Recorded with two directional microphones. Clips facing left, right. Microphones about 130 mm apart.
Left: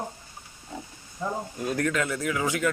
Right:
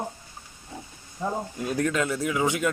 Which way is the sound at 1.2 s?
20° right (ahead or behind).